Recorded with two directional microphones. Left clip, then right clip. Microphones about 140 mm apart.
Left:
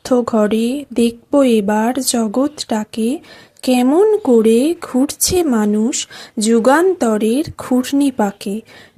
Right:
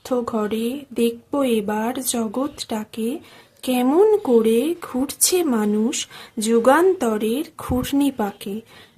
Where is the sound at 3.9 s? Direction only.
25° left (ahead or behind).